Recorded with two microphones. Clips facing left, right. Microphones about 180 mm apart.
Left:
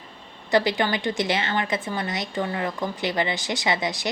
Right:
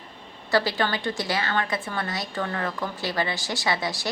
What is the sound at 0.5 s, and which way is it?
A woman's voice, 20° left (ahead or behind).